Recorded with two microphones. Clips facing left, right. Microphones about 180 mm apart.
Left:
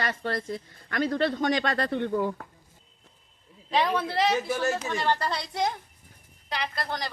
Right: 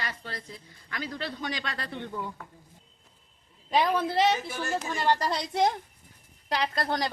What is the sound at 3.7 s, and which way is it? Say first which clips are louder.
A man's voice: right 1 dB; 10° right (ahead or behind).